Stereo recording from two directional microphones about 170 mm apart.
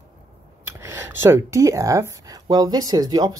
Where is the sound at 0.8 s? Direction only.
15° right (ahead or behind).